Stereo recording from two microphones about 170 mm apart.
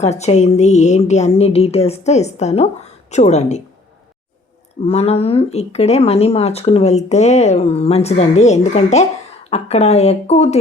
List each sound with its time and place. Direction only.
0.0 s speech: 40° left (ahead or behind)
4.8 s speech: 35° left (ahead or behind)